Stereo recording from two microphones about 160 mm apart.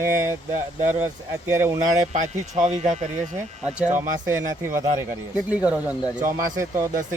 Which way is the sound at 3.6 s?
5° right (ahead or behind).